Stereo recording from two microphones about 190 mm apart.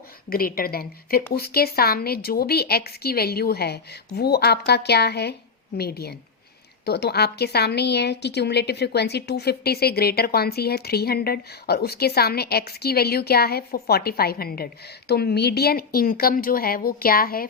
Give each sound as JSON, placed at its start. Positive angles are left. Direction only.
{"t": 0.3, "sound": "a woman's voice", "side_deg": 50}